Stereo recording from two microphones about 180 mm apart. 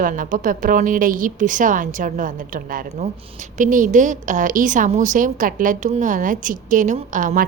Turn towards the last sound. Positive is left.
turn(degrees=-45)  # may be behind; listen again after turning